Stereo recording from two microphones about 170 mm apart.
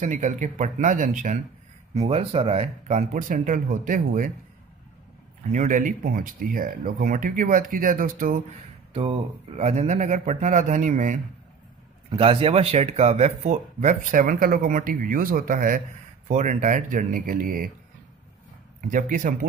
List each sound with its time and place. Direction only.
0.0 s speech: 45° right (ahead or behind)
2.0 s speech: 35° right (ahead or behind)
5.5 s speech: 50° right (ahead or behind)
8.9 s speech: 35° right (ahead or behind)
12.2 s speech: 30° right (ahead or behind); by 17.6 s 55° right (ahead or behind)
18.8 s speech: 50° right (ahead or behind)